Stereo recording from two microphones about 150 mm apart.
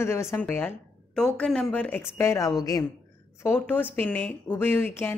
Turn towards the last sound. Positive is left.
turn(degrees=15)  # may be behind; listen again after turning